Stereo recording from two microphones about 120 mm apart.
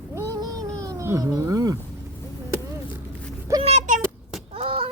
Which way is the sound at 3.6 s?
65° right (ahead or behind).